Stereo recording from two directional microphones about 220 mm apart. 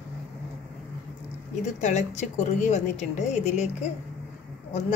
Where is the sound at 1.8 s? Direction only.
30° left (ahead or behind).